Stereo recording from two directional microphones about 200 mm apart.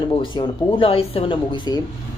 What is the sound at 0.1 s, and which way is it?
Speech, 25° left (ahead or behind).